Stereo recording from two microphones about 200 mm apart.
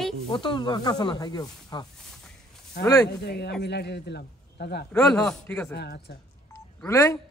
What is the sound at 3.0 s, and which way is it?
A man's voice, 55° left (ahead or behind).